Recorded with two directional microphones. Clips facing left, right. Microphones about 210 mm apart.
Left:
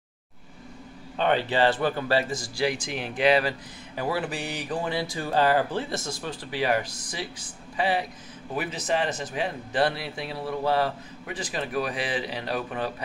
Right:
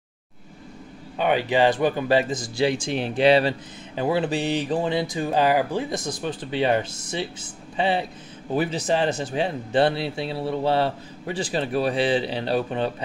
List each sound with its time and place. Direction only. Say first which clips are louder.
1.1 s speech: right 3 dB; 10° right (ahead or behind); by 12.9 s 30° right (ahead or behind)